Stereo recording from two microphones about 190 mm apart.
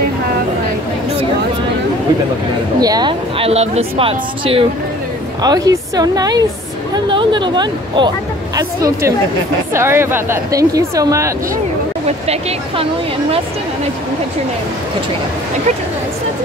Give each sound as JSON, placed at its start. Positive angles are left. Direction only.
{"t": 2.8, "sound": "speech", "side_deg": -20}
{"t": 5.4, "sound": "a woman's voice", "side_deg": -20}
{"t": 12.3, "sound": "speech", "side_deg": -35}